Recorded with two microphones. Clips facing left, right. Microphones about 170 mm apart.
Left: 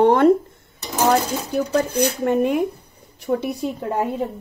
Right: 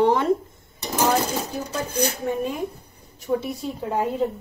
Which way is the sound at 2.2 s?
60° left (ahead or behind).